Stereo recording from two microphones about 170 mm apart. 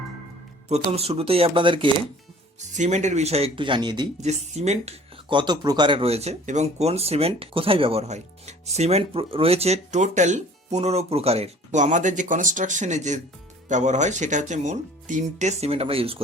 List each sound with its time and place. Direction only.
0.9 s speech: 35° right (ahead or behind)
2.6 s speech: 45° right (ahead or behind); by 4.1 s 25° right (ahead or behind)
4.2 s speech: 40° right (ahead or behind)